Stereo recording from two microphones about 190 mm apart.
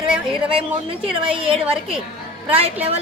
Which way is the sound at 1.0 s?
30° right (ahead or behind).